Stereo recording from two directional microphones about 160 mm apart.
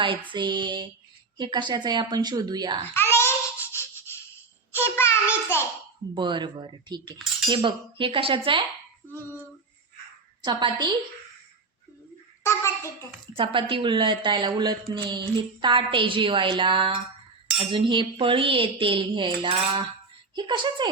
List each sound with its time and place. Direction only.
0.0 s a woman's voice: 30° right (ahead or behind)
2.9 s babbling: 15° left (ahead or behind)
3.7 s music: 15° left (ahead or behind)
4.7 s child singing: 15° left (ahead or behind)
6.1 s a woman's voice: 30° right (ahead or behind)
10.4 s a woman's voice: 30° right (ahead or behind)
12.4 s a child's voice: 15° left (ahead or behind)
13.3 s a woman's voice: 35° right (ahead or behind)